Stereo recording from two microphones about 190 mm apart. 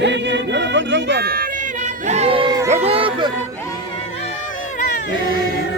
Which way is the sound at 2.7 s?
30° right (ahead or behind).